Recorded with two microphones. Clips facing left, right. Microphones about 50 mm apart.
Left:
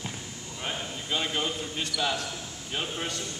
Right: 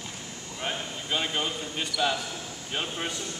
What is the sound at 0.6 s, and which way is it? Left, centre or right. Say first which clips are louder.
Speech: right 1 dB; centre.